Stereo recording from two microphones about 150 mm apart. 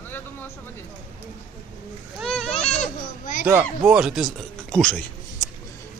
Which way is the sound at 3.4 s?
15° right (ahead or behind).